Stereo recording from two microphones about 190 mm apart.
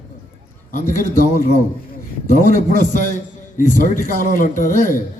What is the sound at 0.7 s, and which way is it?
Speech, 45° left (ahead or behind).